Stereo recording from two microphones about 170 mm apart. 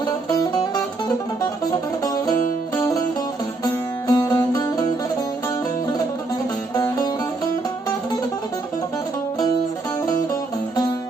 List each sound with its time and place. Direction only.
0.3 s music: 20° left (ahead or behind)
2.7 s music: 20° left (ahead or behind)
4.1 s music: 20° left (ahead or behind)
6.7 s music: 25° left (ahead or behind)